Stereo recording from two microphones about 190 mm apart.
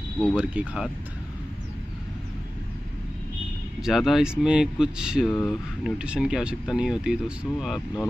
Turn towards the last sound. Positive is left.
turn(degrees=0)  # may be behind; listen again after turning